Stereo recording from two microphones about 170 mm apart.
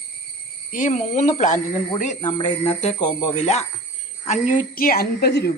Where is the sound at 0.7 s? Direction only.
45° left (ahead or behind).